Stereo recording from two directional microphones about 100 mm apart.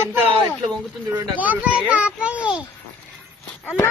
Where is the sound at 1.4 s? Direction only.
15° right (ahead or behind).